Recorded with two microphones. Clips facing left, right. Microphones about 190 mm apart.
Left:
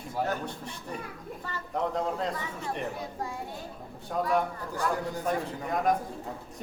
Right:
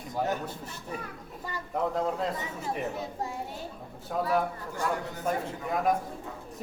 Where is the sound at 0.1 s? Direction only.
15° right (ahead or behind).